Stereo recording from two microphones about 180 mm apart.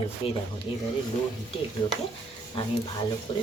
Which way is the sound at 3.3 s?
30° left (ahead or behind).